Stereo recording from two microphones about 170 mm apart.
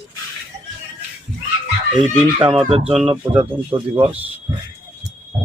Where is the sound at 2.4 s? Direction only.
30° right (ahead or behind).